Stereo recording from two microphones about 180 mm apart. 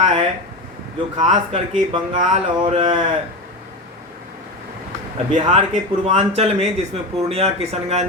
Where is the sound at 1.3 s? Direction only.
25° right (ahead or behind).